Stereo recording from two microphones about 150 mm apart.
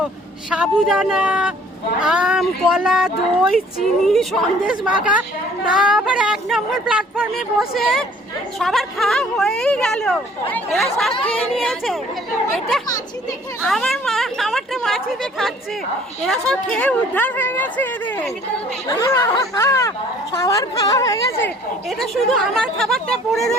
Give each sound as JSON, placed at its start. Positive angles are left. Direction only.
{"t": 0.5, "sound": "speech", "side_deg": -5}
{"t": 13.6, "sound": "a woman's voice", "side_deg": 0}
{"t": 21.8, "sound": "speech", "side_deg": 0}